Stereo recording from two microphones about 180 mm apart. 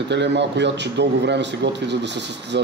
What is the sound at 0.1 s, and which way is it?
A man's voice, 75° right (ahead or behind).